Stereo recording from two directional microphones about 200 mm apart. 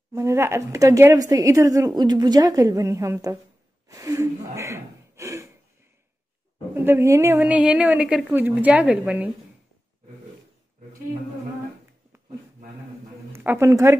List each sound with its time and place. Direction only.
0.1 s a woman's voice: 15° right (ahead or behind)
6.7 s a woman's voice: 10° right (ahead or behind)
13.3 s a woman's voice: 10° right (ahead or behind)